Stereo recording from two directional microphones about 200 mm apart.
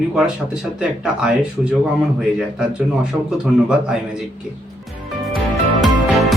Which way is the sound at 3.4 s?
5° right (ahead or behind).